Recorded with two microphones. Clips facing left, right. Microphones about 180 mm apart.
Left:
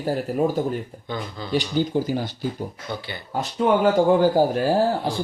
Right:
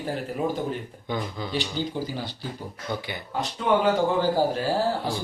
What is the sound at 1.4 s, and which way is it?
Speech, 15° right (ahead or behind).